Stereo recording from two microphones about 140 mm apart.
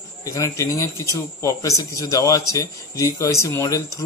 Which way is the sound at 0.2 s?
25° left (ahead or behind).